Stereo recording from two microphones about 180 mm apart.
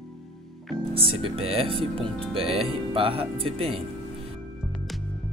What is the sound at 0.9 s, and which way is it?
Speech, 30° right (ahead or behind).